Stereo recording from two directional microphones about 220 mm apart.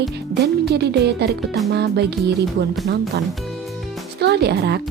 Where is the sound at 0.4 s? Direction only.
50° right (ahead or behind).